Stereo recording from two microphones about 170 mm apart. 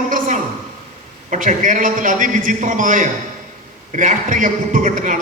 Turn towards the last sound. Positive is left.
turn(degrees=-50)  # may be behind; listen again after turning